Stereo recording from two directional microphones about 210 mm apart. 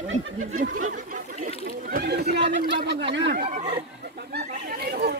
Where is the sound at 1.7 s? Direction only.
45° right (ahead or behind).